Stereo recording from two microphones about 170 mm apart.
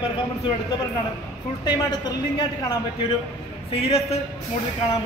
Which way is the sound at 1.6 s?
25° left (ahead or behind).